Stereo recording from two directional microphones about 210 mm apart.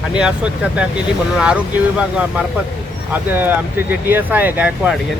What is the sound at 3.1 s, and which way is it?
Speech, 10° right (ahead or behind).